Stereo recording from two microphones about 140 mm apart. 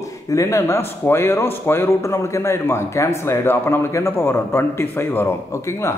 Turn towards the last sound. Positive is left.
turn(degrees=15)  # may be behind; listen again after turning